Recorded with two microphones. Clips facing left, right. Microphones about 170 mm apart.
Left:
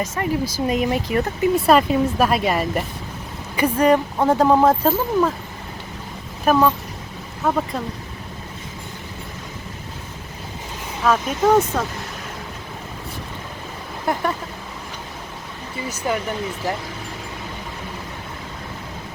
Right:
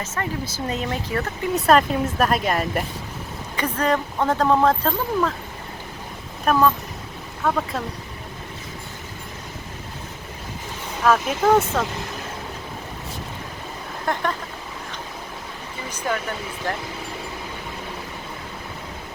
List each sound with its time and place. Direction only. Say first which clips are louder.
0.0 s speech: left 6 dB; 10° left (ahead or behind)
1.5 s speech: left 1 dB; centre (ahead or behind)
6.4 s speech: left 2 dB; 5° left (ahead or behind)
11.0 s speech: left 1 dB; centre (ahead or behind)
14.1 s speech: left 2 dB; 5° left (ahead or behind)
16.1 s speech: left 3 dB; 10° left (ahead or behind)